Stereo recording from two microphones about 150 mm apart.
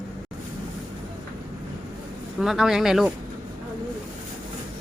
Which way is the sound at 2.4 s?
Centre (ahead or behind).